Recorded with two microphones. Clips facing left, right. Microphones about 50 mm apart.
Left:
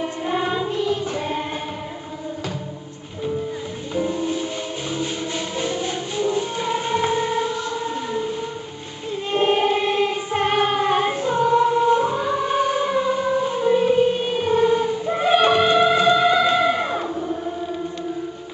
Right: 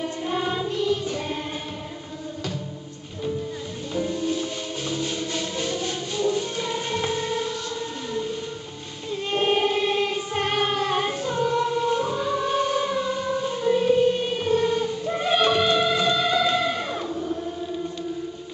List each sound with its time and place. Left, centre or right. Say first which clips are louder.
0.0 s music: left 3 dB; centre
3.9 s music: left 3 dB; centre
5.6 s music: left 3 dB; centre
9.3 s choir: left 3 dB; centre